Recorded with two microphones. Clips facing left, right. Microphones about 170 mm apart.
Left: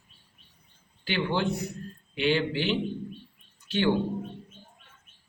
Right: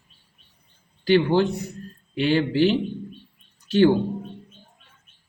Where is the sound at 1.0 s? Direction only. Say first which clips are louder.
Right 9 dB; 40° right (ahead or behind).